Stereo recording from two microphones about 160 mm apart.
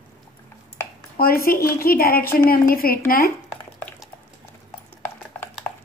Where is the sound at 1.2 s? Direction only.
65° left (ahead or behind).